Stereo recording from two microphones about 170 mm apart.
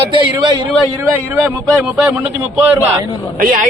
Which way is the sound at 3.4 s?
55° right (ahead or behind).